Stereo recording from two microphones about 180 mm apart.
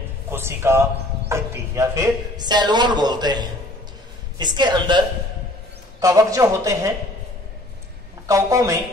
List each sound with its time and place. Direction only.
0.3 s a man's voice: 15° right (ahead or behind)
8.3 s speech: 15° right (ahead or behind)